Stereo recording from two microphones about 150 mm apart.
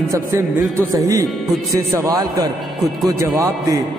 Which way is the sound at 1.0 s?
20° right (ahead or behind).